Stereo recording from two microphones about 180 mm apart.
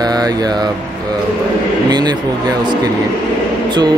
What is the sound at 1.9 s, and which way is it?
Speech, 25° right (ahead or behind).